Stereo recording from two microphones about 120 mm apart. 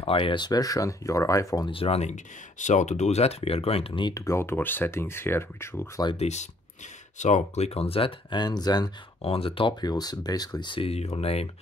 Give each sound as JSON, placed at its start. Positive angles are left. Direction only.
{"t": 0.0, "sound": "speech", "side_deg": 50}
{"t": 1.7, "sound": "speech", "side_deg": 55}
{"t": 2.6, "sound": "speech", "side_deg": 85}
{"t": 4.1, "sound": "speech", "side_deg": 25}
{"t": 6.1, "sound": "speech", "side_deg": 70}
{"t": 7.2, "sound": "speech", "side_deg": 80}
{"t": 9.2, "sound": "speech", "side_deg": 55}